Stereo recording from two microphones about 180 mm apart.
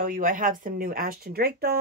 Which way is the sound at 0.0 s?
50° right (ahead or behind).